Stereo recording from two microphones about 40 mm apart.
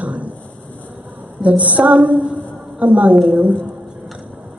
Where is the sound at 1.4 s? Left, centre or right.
Right.